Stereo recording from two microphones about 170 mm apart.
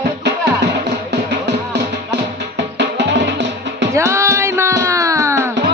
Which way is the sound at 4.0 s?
15° right (ahead or behind).